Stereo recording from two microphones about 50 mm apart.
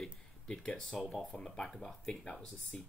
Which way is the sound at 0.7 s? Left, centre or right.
Centre.